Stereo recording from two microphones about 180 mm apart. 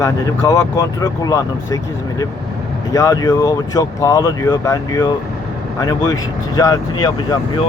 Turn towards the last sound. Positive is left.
turn(degrees=20)  # may be behind; listen again after turning